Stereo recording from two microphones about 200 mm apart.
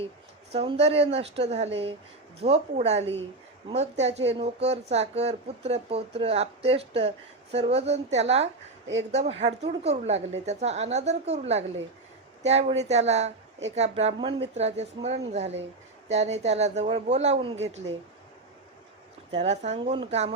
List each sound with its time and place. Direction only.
0.5 s speech: 30° right (ahead or behind)
19.4 s speech: 35° right (ahead or behind)